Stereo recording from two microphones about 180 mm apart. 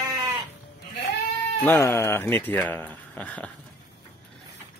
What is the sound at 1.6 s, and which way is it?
Speech, 10° left (ahead or behind).